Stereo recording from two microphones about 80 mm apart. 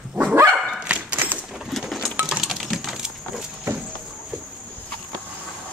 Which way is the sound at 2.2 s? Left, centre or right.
Centre.